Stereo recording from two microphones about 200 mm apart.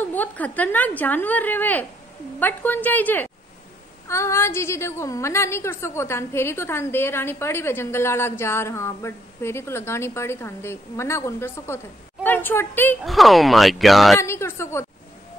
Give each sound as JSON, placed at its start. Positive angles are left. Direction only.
{"t": 0.0, "sound": "a woman's voice", "side_deg": 10}
{"t": 14.2, "sound": "a woman's voice", "side_deg": 15}